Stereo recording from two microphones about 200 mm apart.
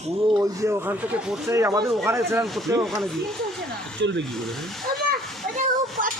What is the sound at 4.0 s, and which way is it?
Speech, 65° right (ahead or behind).